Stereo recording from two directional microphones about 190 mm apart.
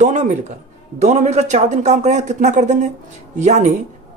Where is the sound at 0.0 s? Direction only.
40° right (ahead or behind).